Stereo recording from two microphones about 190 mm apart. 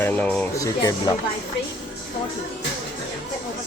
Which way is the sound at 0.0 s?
5° left (ahead or behind).